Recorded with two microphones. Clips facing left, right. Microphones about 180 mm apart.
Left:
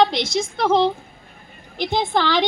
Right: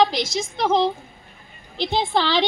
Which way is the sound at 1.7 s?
15° left (ahead or behind).